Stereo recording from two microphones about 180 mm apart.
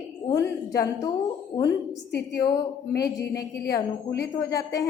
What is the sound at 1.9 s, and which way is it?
A woman's voice, 65° left (ahead or behind).